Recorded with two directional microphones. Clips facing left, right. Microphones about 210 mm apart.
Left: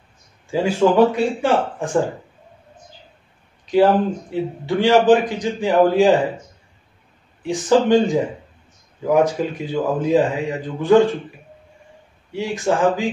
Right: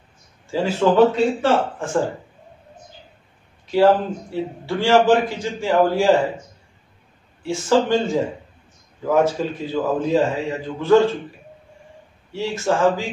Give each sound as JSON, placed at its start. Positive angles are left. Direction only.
{"t": 0.5, "sound": "a man's voice", "side_deg": 15}
{"t": 3.6, "sound": "a man's voice", "side_deg": 15}
{"t": 7.4, "sound": "a man's voice", "side_deg": 15}
{"t": 12.3, "sound": "a man's voice", "side_deg": 15}